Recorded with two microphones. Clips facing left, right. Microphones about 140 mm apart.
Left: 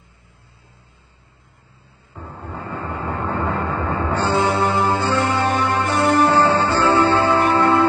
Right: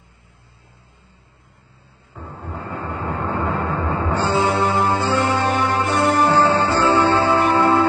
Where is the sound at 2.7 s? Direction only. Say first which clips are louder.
Even; centre (ahead or behind).